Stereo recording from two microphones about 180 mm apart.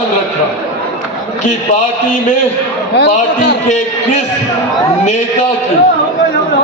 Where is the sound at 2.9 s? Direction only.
70° left (ahead or behind).